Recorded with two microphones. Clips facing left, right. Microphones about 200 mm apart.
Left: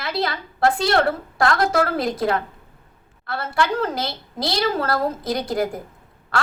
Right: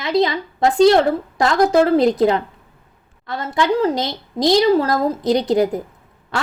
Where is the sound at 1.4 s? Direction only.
20° right (ahead or behind).